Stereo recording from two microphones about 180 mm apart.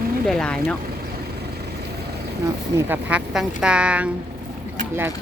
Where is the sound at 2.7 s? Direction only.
10° right (ahead or behind).